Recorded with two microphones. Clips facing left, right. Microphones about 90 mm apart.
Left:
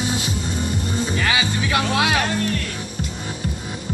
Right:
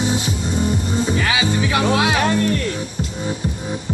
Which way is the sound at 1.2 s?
10° right (ahead or behind).